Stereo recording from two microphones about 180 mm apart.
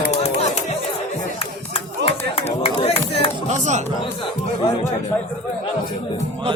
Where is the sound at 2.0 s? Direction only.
30° left (ahead or behind).